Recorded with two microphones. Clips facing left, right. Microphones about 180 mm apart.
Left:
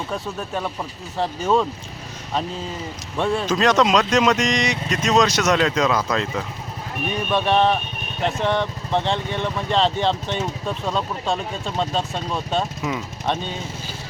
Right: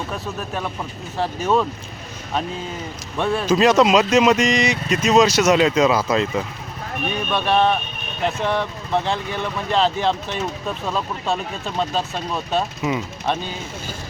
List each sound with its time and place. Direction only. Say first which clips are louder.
0.1 s speech: left 1 dB; centre (ahead or behind)
3.2 s speech: right 3 dB; centre (ahead or behind)
9.3 s speech: left 1 dB; 30° left (ahead or behind)
9.7 s speech: right 1 dB; 5° right (ahead or behind)